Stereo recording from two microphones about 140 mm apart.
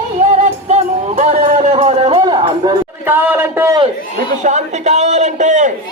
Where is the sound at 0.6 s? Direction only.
55° right (ahead or behind); by 2.7 s 35° right (ahead or behind).